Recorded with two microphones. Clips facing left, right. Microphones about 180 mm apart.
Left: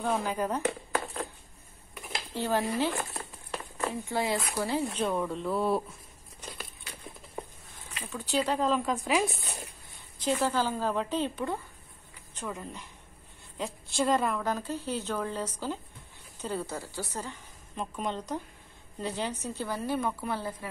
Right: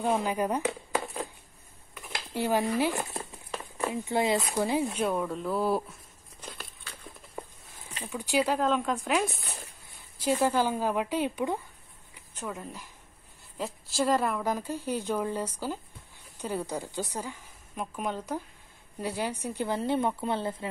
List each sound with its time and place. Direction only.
0.0 s speech: 15° right (ahead or behind)
2.3 s speech: 10° right (ahead or behind)
6.8 s a sound: 15° left (ahead or behind)
8.1 s speech: 10° right (ahead or behind)
8.5 s speech: centre (ahead or behind)
10.4 s speech: 15° right (ahead or behind)
12.4 s a woman's voice: 5° right (ahead or behind); by 20.6 s 25° right (ahead or behind)